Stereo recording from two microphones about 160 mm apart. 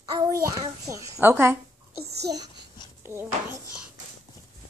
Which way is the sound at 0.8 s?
20° right (ahead or behind).